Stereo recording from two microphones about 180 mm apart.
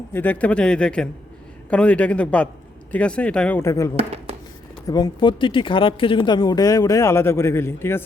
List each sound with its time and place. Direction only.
0.1 s speech: 10° left (ahead or behind)
3.9 s speech: 35° right (ahead or behind)
4.9 s speech: 20° left (ahead or behind)